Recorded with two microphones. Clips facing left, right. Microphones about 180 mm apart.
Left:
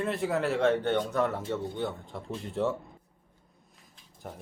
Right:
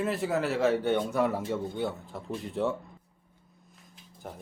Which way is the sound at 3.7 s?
Centre (ahead or behind).